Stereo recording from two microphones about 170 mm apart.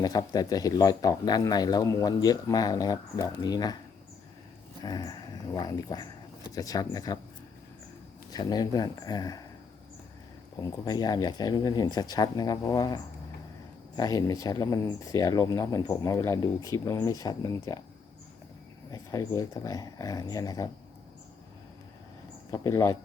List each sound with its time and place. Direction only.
0.0 s speech: 25° left (ahead or behind)
4.8 s speech: 25° left (ahead or behind)
8.3 s speech: 25° left (ahead or behind)
10.6 s speech: 25° left (ahead or behind)
18.9 s speech: 20° left (ahead or behind)
22.5 s speech: 20° left (ahead or behind)